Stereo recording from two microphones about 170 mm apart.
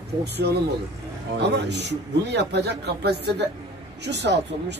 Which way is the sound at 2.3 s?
80° right.